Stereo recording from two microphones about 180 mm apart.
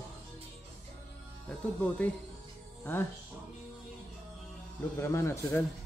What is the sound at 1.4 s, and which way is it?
Speech, 10° left (ahead or behind).